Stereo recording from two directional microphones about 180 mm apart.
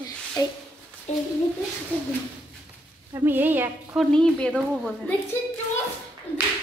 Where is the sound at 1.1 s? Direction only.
40° left (ahead or behind).